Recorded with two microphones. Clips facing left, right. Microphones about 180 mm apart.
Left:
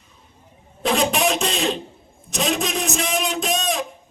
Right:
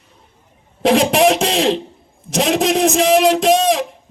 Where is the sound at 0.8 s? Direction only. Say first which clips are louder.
Right 7 dB; 90° right.